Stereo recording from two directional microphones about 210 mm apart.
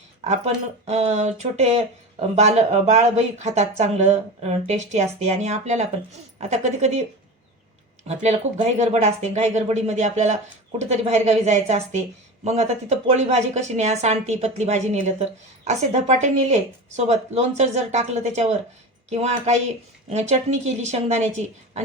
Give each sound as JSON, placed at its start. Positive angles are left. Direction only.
{"t": 0.3, "sound": "speech", "side_deg": -30}
{"t": 8.0, "sound": "speech", "side_deg": -30}